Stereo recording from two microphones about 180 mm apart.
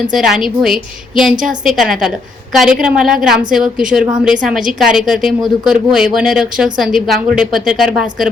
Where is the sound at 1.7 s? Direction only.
Centre (ahead or behind).